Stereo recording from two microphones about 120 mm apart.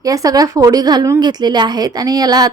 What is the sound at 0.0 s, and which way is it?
A woman's voice, 30° right (ahead or behind).